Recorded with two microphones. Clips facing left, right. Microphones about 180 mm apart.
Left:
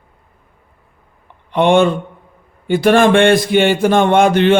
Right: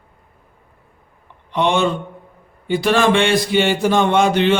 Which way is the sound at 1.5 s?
55° left (ahead or behind).